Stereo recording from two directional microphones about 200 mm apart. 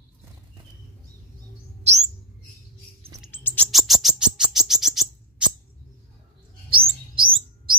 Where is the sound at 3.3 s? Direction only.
10° left (ahead or behind).